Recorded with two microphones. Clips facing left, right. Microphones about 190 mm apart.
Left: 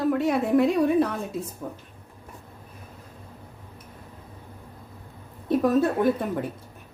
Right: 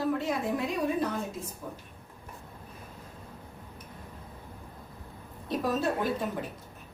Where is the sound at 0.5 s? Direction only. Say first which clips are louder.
Left 9 dB; 65° left (ahead or behind).